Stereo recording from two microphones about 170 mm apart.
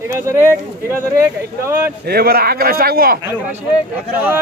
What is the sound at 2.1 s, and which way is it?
A man's voice, 65° right (ahead or behind).